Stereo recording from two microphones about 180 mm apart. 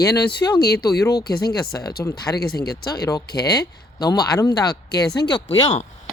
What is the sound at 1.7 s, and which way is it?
Speech, 20° left (ahead or behind).